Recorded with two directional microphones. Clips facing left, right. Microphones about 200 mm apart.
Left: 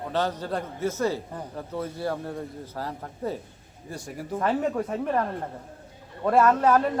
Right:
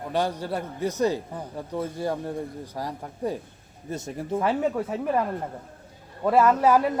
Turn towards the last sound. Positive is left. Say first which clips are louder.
# right 1 dB
turn(degrees=-10)  # may be behind; listen again after turning